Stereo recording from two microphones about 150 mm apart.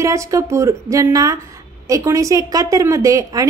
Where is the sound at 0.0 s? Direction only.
20° right (ahead or behind).